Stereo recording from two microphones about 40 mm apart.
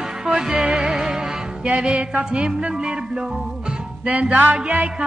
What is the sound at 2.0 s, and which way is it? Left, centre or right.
Music, right.